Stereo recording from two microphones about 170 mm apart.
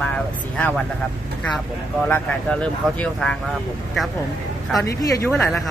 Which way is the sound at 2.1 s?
5° left (ahead or behind).